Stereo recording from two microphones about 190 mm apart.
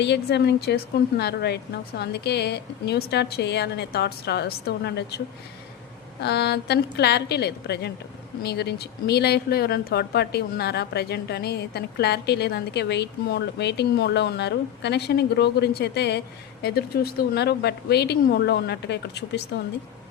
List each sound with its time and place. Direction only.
0.0 s a woman's voice: 65° left (ahead or behind)
6.2 s a woman's voice: 60° left (ahead or behind)